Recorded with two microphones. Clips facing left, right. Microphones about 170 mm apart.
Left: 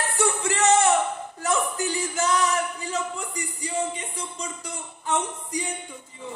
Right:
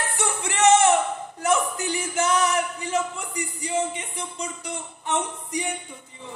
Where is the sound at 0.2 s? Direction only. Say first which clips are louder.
Right 2 dB; 35° left (ahead or behind).